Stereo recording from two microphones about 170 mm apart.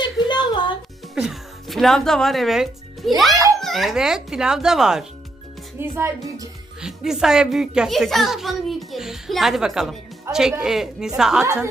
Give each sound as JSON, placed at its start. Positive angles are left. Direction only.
{"t": 0.0, "sound": "a sound", "side_deg": 25}
{"t": 1.1, "sound": "speech", "side_deg": 0}
{"t": 3.3, "sound": "a sound", "side_deg": -20}
{"t": 3.6, "sound": "a child's voice", "side_deg": 0}
{"t": 5.8, "sound": "speech", "side_deg": -15}
{"t": 6.8, "sound": "a child's voice", "side_deg": -5}
{"t": 10.3, "sound": "speech", "side_deg": -15}
{"t": 10.6, "sound": "a child's voice", "side_deg": -5}